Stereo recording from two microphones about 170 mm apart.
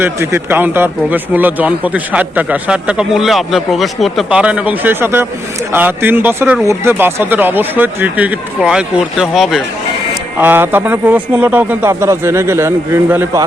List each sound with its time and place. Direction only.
0.0 s a man's voice: 15° right (ahead or behind)
10.3 s a man's voice: 10° right (ahead or behind)